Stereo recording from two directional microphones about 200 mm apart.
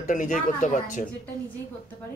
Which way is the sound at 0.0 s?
40° left (ahead or behind).